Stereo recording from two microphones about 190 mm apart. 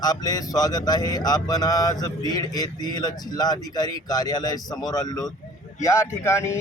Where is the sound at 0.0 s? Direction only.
20° left (ahead or behind).